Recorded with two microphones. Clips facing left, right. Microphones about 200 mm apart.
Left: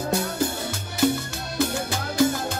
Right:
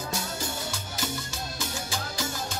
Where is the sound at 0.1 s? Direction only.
60° left (ahead or behind).